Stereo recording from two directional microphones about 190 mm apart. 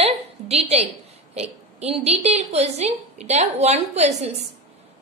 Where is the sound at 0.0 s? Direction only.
30° right (ahead or behind).